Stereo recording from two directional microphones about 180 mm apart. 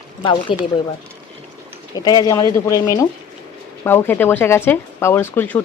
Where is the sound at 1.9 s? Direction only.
20° left (ahead or behind).